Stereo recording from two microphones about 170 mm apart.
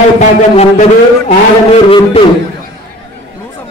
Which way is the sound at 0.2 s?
45° left (ahead or behind).